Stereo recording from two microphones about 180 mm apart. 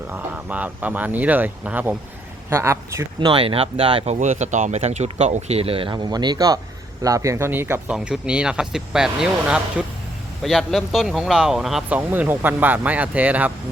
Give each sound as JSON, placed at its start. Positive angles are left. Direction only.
{"t": 0.1, "sound": "speech", "side_deg": -10}
{"t": 3.2, "sound": "speech", "side_deg": -30}